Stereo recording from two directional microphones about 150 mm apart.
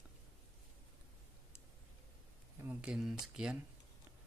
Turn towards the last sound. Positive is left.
turn(degrees=-5)  # may be behind; listen again after turning